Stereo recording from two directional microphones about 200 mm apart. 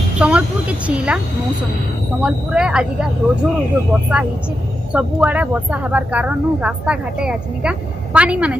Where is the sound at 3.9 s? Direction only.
5° right (ahead or behind).